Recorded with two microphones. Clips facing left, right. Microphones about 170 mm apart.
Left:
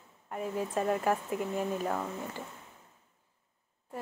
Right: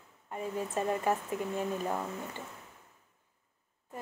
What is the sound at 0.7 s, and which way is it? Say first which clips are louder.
Speech: left 1 dB; 5° right (ahead or behind).